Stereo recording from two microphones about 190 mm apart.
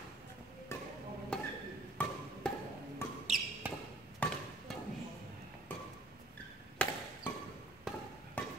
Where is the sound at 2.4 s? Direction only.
5° left (ahead or behind).